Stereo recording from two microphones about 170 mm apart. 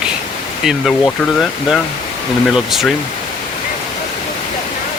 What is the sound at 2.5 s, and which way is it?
Speech, centre (ahead or behind).